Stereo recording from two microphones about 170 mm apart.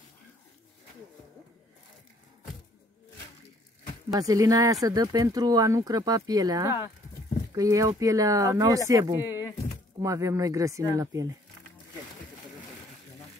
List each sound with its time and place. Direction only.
4.1 s speech: 20° right (ahead or behind)